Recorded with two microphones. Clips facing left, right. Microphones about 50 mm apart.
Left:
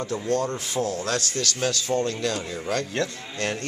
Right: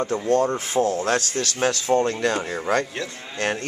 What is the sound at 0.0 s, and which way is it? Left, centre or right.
A man's voice, right.